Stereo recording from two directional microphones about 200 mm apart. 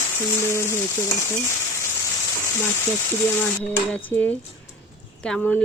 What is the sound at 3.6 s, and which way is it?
Frying, 5° left (ahead or behind).